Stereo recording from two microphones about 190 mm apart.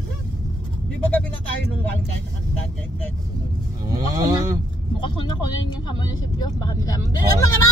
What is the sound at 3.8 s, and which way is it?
Speech, 20° right (ahead or behind).